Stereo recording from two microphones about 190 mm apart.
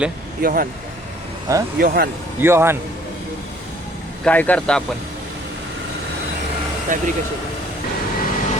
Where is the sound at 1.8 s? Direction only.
50° right (ahead or behind).